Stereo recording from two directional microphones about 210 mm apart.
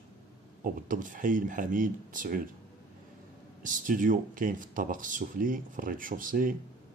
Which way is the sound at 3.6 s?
40° right (ahead or behind).